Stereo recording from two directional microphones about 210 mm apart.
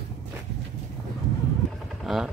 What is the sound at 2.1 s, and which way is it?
Speech, centre (ahead or behind).